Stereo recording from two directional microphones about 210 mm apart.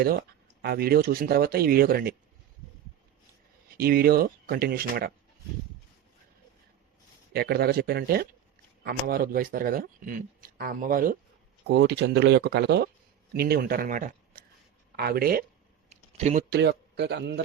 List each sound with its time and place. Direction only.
0.0 s speech: 50° right (ahead or behind)
3.8 s speech: 45° right (ahead or behind)
7.3 s speech: 50° right (ahead or behind)
11.6 s speech: 55° right (ahead or behind)
15.9 s a sound: 35° right (ahead or behind)
16.5 s speech: 55° right (ahead or behind)